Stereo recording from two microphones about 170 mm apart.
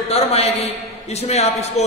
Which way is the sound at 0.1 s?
35° left (ahead or behind).